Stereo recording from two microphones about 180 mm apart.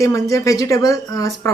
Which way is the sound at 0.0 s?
20° left (ahead or behind).